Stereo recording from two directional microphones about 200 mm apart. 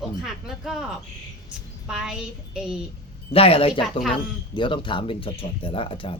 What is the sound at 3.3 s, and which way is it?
Speech, 30° left (ahead or behind).